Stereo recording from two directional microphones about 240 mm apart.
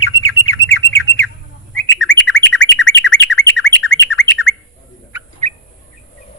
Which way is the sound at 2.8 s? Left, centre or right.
Left.